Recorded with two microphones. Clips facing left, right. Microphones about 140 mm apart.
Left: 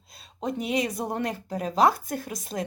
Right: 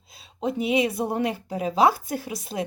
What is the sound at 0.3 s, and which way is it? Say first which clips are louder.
Speech: right 4 dB; 5° right (ahead or behind).